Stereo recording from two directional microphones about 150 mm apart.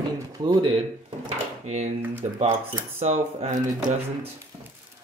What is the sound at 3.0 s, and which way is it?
Speech, 45° right (ahead or behind).